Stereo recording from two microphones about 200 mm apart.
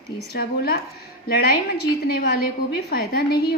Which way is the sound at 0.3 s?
50° left (ahead or behind).